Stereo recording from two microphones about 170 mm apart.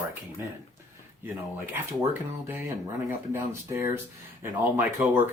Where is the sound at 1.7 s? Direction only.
15° right (ahead or behind).